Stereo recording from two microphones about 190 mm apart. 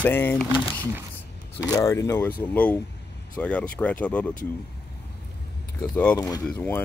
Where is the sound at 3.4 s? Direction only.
5° left (ahead or behind).